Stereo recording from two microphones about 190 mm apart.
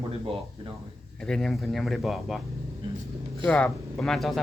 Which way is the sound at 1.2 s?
Centre (ahead or behind).